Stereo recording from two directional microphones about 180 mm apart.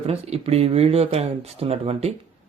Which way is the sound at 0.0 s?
35° right (ahead or behind).